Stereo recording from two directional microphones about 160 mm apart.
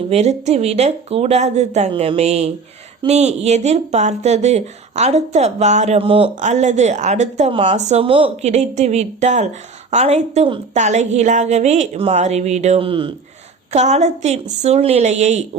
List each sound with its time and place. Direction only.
0.1 s a woman's voice: 40° right (ahead or behind)
6.3 s a woman's voice: 50° right (ahead or behind)
7.5 s a woman's voice: 35° right (ahead or behind)
13.7 s a woman's voice: 45° right (ahead or behind)